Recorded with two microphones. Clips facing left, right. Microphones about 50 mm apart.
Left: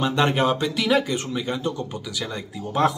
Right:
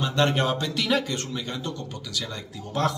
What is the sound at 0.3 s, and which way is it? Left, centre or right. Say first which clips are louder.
Speech: left 4 dB; centre.